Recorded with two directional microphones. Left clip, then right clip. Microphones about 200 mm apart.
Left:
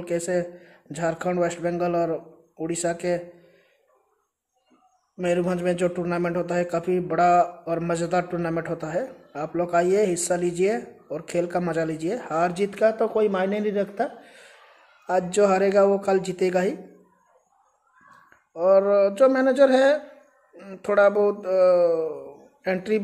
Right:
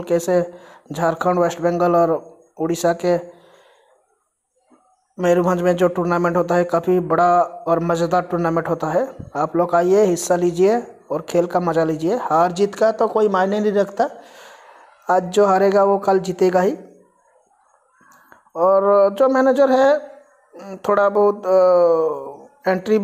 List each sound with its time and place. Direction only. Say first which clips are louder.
0.0 s speech: right 8 dB; 20° right (ahead or behind)
5.1 s speech: right 7 dB; 15° right (ahead or behind)
18.5 s speech: right 4 dB; 15° right (ahead or behind)